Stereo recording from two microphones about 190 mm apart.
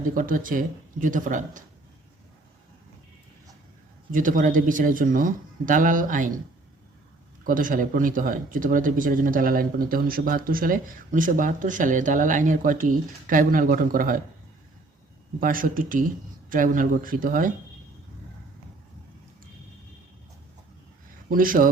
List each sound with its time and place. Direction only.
0.0 s speech: 45° right (ahead or behind)
4.1 s speech: 45° right (ahead or behind)
7.4 s speech: 45° right (ahead or behind)
15.4 s speech: 45° right (ahead or behind)
21.2 s speech: 45° right (ahead or behind)